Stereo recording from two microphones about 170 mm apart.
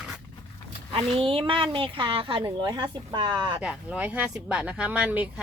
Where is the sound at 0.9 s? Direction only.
30° right (ahead or behind).